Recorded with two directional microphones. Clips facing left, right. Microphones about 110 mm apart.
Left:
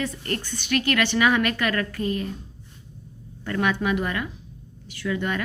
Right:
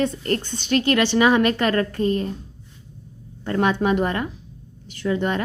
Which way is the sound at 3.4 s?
30° right (ahead or behind).